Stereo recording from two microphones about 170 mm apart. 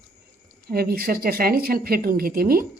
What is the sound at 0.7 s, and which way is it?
Speech, 65° right (ahead or behind).